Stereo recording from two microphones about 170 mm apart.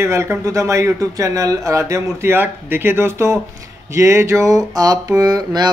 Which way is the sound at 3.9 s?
15° right (ahead or behind).